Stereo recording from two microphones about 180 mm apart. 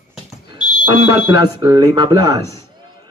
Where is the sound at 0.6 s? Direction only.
25° left (ahead or behind).